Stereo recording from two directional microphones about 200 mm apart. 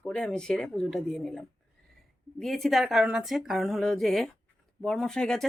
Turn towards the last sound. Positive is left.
turn(degrees=5)  # may be behind; listen again after turning